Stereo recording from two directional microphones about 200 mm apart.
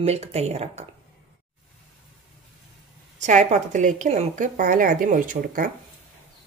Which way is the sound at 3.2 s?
35° right (ahead or behind).